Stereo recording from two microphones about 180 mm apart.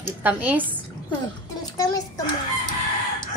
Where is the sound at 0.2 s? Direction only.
10° right (ahead or behind).